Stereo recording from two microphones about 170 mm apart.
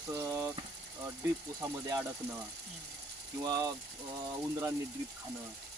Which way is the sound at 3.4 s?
20° right (ahead or behind).